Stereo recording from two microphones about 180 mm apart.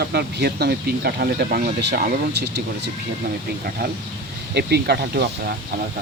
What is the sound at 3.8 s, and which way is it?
Speech, 65° right (ahead or behind).